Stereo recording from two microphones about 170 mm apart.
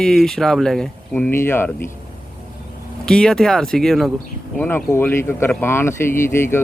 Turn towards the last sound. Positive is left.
turn(degrees=15)  # may be behind; listen again after turning